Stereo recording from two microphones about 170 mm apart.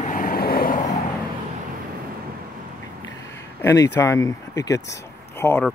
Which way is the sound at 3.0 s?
15° left (ahead or behind).